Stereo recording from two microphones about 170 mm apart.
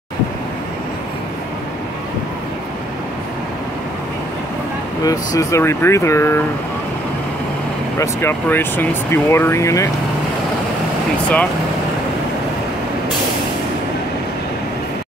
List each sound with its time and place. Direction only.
5.0 s speech: 20° left (ahead or behind)
8.0 s speech: 15° left (ahead or behind)